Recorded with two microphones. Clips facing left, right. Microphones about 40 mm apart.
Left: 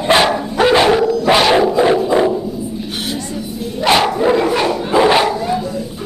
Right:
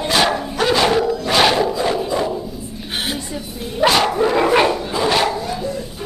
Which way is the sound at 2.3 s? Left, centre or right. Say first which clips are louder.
Left 6 dB; centre.